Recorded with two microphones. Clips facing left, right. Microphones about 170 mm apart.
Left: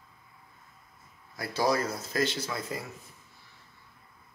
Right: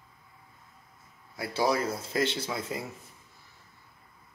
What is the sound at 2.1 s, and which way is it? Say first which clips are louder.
Speech: even; 20° right (ahead or behind).